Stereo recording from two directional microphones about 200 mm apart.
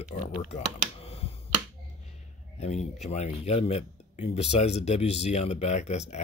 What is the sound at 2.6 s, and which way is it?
Speech, 35° left (ahead or behind).